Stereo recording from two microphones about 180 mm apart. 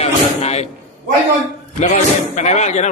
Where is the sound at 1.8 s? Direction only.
40° left (ahead or behind).